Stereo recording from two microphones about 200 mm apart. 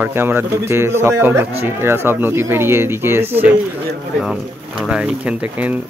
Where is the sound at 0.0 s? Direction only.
10° right (ahead or behind).